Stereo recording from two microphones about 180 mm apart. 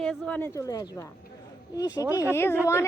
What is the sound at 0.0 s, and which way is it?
A woman's voice, 5° left (ahead or behind).